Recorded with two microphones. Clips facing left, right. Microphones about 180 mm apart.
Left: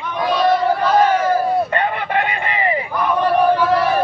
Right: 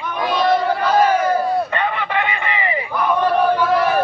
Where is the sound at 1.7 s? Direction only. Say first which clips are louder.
Left 2 dB; 45° left (ahead or behind).